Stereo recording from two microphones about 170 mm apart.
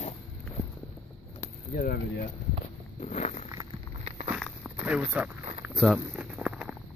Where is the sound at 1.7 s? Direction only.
60° left (ahead or behind).